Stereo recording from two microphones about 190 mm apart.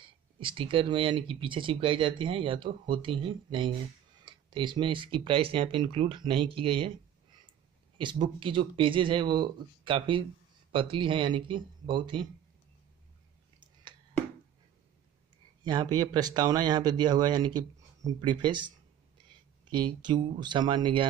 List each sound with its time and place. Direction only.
0.0 s speech: 25° right (ahead or behind)
8.0 s speech: 25° right (ahead or behind)
15.6 s speech: 20° right (ahead or behind)
19.8 s speech: 25° right (ahead or behind)